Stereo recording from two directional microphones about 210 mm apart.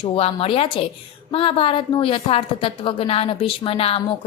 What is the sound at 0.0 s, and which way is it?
A woman's voice, 25° left (ahead or behind).